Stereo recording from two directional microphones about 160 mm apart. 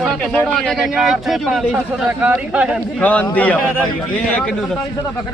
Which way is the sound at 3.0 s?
10° left (ahead or behind).